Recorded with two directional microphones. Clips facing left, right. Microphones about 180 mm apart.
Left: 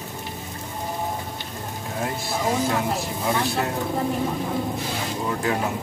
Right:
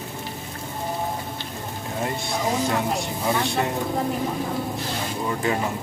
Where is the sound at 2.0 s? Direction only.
Centre (ahead or behind).